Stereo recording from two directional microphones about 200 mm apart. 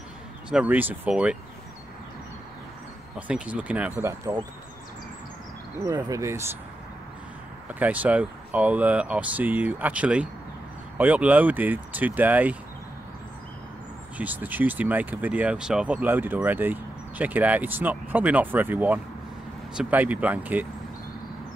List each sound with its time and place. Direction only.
0.5 s speech: 5° right (ahead or behind)
3.2 s speech: 5° right (ahead or behind)
5.8 s speech: 15° right (ahead or behind)
7.8 s speech: 10° right (ahead or behind)
14.1 s speech: 10° right (ahead or behind)